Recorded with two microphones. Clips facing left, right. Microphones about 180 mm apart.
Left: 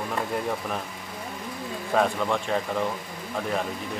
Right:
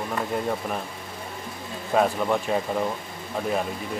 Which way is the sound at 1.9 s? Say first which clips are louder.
Right 2 dB; 5° right (ahead or behind).